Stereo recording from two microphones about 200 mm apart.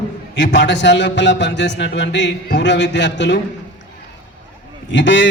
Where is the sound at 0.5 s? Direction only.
60° left (ahead or behind).